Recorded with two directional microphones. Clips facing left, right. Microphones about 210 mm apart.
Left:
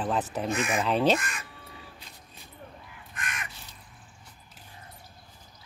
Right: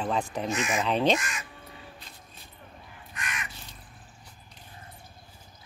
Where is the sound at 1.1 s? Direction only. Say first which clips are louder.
Even; 55° left (ahead or behind).